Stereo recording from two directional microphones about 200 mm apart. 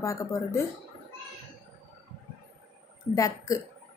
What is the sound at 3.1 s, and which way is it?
Speech, 15° left (ahead or behind).